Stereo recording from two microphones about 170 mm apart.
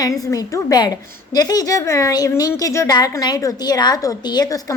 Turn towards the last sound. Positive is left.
turn(degrees=20)  # may be behind; listen again after turning